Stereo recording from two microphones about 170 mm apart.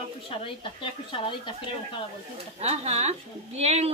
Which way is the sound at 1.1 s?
30° left (ahead or behind).